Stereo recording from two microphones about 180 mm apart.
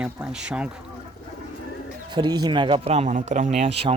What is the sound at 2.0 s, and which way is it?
Speech, 25° right (ahead or behind).